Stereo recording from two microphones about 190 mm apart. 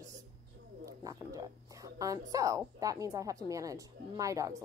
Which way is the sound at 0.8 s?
15° right (ahead or behind).